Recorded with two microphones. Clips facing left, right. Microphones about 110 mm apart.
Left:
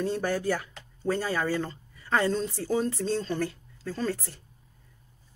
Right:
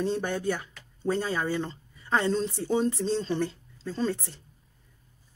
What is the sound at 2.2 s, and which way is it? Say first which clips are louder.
Speech: right 1 dB; centre (ahead or behind).